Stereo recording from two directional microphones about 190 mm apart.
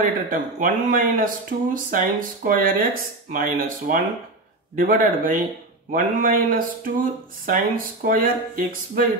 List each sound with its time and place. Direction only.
0.3 s speech: 45° right (ahead or behind)